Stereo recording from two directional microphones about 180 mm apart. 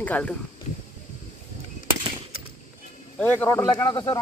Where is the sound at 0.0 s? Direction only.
5° left (ahead or behind).